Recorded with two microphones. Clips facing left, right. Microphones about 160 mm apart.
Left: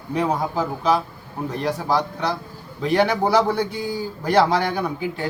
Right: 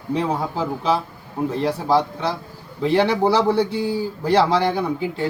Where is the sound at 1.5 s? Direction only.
25° right (ahead or behind).